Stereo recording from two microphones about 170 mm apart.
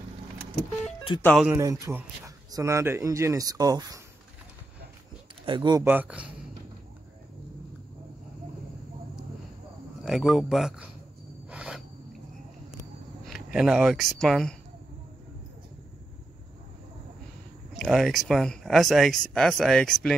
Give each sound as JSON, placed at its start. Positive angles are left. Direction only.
{"t": 0.8, "sound": "speech", "side_deg": 30}
{"t": 1.2, "sound": "speech", "side_deg": 0}
{"t": 1.5, "sound": "speech", "side_deg": -20}
{"t": 5.4, "sound": "speech", "side_deg": -25}
{"t": 5.9, "sound": "speech", "side_deg": -10}
{"t": 10.0, "sound": "speech", "side_deg": 0}
{"t": 11.4, "sound": "a sound", "side_deg": -5}
{"t": 13.3, "sound": "speech", "side_deg": -5}
{"t": 17.7, "sound": "speech", "side_deg": 0}